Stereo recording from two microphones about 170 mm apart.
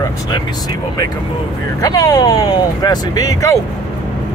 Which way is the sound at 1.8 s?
20° left (ahead or behind).